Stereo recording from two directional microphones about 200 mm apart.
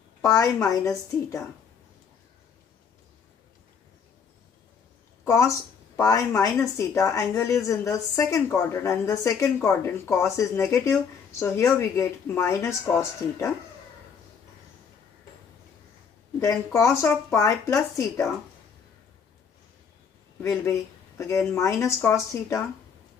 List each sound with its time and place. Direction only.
0.2 s a woman's voice: 15° left (ahead or behind)
5.2 s a woman's voice: 15° left (ahead or behind)
16.3 s a woman's voice: 15° left (ahead or behind)
21.2 s a woman's voice: 15° left (ahead or behind)